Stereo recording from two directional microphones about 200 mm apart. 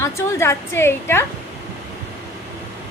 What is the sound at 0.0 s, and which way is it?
A woman's voice, 15° left (ahead or behind).